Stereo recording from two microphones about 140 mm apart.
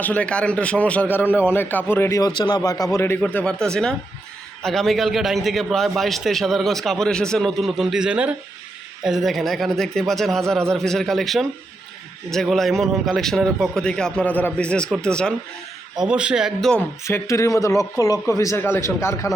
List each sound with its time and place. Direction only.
0.0 s a man's voice: 10° left (ahead or behind)
3.2 s a man's voice: 10° left (ahead or behind)
16.0 s a man's voice: 5° right (ahead or behind)
17.0 s a man's voice: 20° left (ahead or behind)